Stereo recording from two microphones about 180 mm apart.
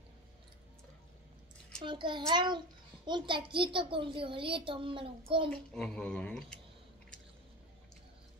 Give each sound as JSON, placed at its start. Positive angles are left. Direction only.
{"t": 1.9, "sound": "a child's voice", "side_deg": -25}
{"t": 5.5, "sound": "speech", "side_deg": 5}